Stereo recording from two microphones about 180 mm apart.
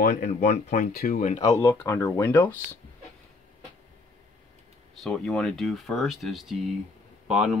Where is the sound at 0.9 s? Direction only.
55° left (ahead or behind).